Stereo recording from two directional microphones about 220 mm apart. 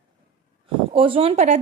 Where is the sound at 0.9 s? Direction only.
25° right (ahead or behind).